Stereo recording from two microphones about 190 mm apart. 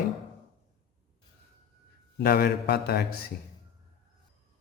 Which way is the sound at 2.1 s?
55° left (ahead or behind).